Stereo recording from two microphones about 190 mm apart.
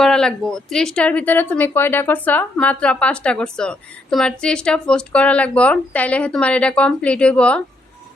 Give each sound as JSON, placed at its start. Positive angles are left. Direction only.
{"t": 0.0, "sound": "a woman's voice", "side_deg": 5}